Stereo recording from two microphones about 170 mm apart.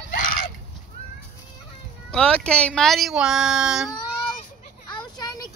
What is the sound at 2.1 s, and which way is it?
Speech, 5° left (ahead or behind).